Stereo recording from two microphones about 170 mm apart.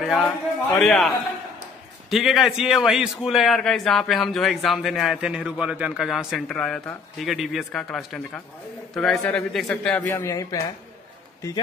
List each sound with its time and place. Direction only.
0.0 s a man's voice: centre (ahead or behind)
10.0 s a man's voice: 20° left (ahead or behind)